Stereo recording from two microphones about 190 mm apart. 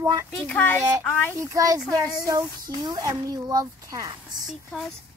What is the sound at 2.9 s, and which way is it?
Speech, 20° right (ahead or behind).